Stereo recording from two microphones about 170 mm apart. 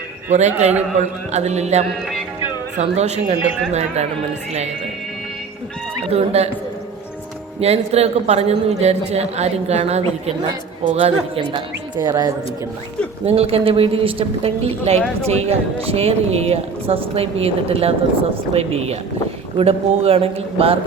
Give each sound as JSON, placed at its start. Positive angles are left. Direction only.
{"t": 0.3, "sound": "a man's voice", "side_deg": -45}
{"t": 6.1, "sound": "speech", "side_deg": -35}
{"t": 7.6, "sound": "speech", "side_deg": -40}
{"t": 13.2, "sound": "speech", "side_deg": -35}